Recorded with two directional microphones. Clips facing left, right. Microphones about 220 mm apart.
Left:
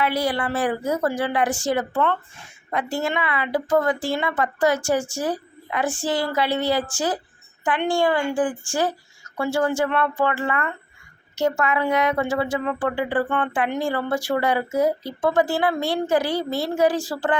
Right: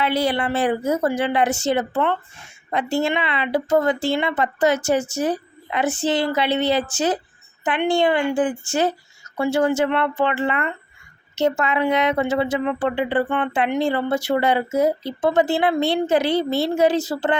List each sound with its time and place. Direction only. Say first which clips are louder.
0.0 s speech: right 2 dB; 25° right (ahead or behind)